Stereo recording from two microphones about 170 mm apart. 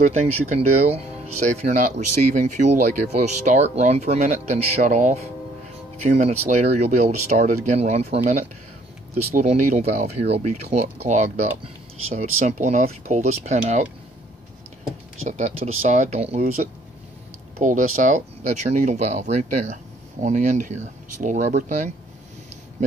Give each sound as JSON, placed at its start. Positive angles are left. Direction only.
{"t": 0.0, "sound": "speech", "side_deg": -40}
{"t": 9.5, "sound": "speech", "side_deg": -40}
{"t": 15.2, "sound": "speech", "side_deg": -45}
{"t": 17.6, "sound": "speech", "side_deg": -50}